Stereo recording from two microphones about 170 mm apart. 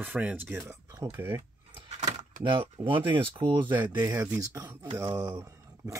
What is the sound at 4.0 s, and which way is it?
Speech, 15° right (ahead or behind).